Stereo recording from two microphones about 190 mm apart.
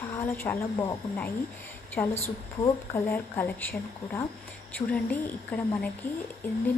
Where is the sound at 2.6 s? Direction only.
10° left (ahead or behind).